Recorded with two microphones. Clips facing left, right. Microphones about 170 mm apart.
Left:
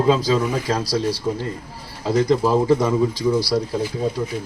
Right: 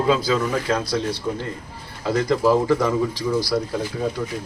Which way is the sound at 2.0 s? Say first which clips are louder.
Left 1 dB; 20° left (ahead or behind).